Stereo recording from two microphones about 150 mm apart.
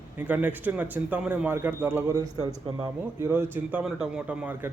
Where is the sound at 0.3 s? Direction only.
10° right (ahead or behind).